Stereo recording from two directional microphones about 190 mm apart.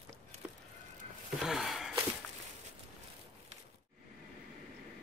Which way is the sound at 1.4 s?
Centre (ahead or behind).